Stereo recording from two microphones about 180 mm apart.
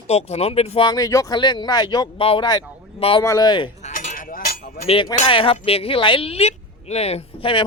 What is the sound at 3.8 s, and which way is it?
Cutlery, 45° left (ahead or behind).